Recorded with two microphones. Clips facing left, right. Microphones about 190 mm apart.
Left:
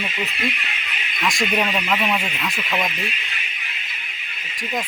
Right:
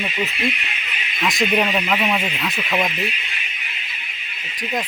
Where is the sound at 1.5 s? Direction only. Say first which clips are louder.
Right 2 dB; 10° right (ahead or behind).